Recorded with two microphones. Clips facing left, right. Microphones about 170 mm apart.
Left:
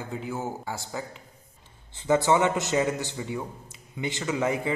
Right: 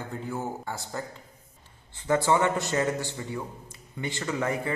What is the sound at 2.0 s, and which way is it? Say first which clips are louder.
Speech: left 2 dB; 20° left (ahead or behind).